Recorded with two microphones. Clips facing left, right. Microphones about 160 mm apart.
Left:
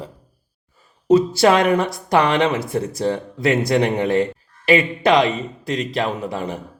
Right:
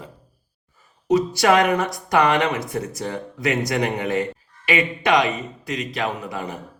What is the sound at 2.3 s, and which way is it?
Speech, 30° left (ahead or behind).